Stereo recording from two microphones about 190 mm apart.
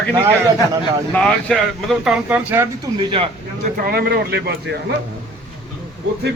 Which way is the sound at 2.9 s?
25° right (ahead or behind).